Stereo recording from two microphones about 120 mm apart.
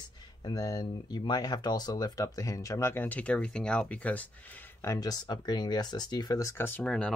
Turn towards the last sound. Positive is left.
turn(degrees=5)  # may be behind; listen again after turning